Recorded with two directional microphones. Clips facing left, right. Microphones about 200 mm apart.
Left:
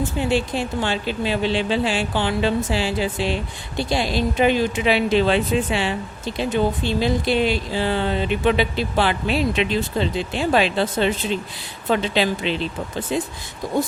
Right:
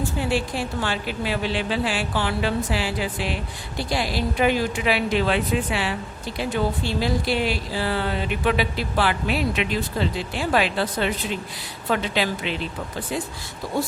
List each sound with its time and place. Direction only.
0.0 s a woman's voice: 20° left (ahead or behind)